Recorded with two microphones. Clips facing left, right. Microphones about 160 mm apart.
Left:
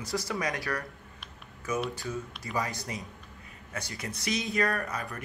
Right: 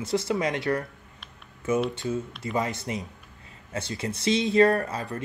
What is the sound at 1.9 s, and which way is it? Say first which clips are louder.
Speech: right 6 dB; 25° right (ahead or behind).